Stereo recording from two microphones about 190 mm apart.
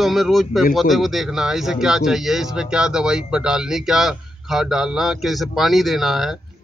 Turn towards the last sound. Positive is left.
turn(degrees=0)  # may be behind; listen again after turning